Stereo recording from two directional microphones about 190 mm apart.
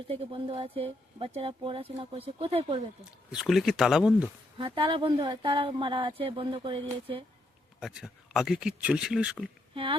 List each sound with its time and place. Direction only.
0.1 s speech: 30° right (ahead or behind)
3.0 s speech: centre (ahead or behind)
4.5 s speech: 30° right (ahead or behind)
7.8 s speech: 5° right (ahead or behind)
9.7 s speech: 30° right (ahead or behind)